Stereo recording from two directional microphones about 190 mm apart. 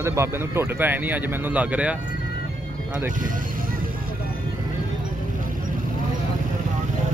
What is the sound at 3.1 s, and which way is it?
Speech, 45° right (ahead or behind).